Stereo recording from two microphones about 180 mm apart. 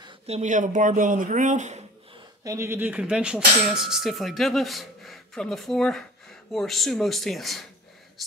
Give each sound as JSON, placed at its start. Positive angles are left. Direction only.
{"t": 0.0, "sound": "speech", "side_deg": -40}
{"t": 2.4, "sound": "speech", "side_deg": -15}